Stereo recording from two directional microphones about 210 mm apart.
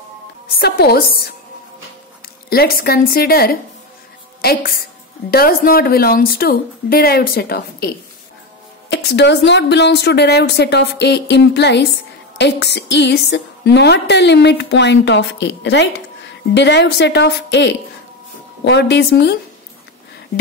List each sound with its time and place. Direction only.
0.6 s speech: 50° left (ahead or behind)
2.5 s speech: 45° left (ahead or behind)
4.4 s music: 45° left (ahead or behind)
5.3 s speech: 45° left (ahead or behind)
8.9 s a woman's voice: 55° left (ahead or behind)